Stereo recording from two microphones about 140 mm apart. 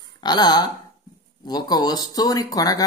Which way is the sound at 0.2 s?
30° left (ahead or behind).